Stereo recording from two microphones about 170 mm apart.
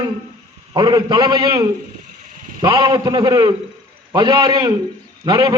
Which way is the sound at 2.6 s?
25° right (ahead or behind).